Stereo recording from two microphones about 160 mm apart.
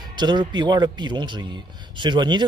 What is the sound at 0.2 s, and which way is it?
Speech, 30° right (ahead or behind).